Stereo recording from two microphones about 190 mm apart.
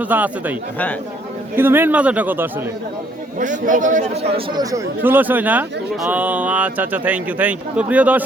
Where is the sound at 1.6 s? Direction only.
10° right (ahead or behind).